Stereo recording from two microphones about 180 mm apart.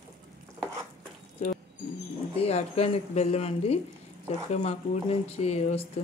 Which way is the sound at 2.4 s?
35° left (ahead or behind).